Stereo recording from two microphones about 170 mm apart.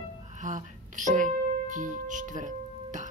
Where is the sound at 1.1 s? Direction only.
50° right (ahead or behind).